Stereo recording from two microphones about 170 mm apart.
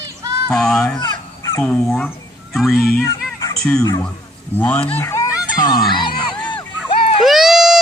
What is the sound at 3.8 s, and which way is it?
Speech, 20° left (ahead or behind).